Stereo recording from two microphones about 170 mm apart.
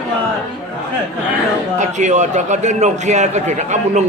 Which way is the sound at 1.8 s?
45° right (ahead or behind).